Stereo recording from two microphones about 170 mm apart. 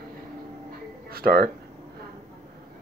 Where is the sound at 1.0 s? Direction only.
65° right (ahead or behind).